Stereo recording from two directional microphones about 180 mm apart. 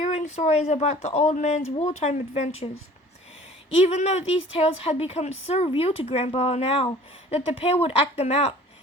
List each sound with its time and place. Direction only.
0.0 s speech: 40° left (ahead or behind)
3.8 s speech: 40° left (ahead or behind)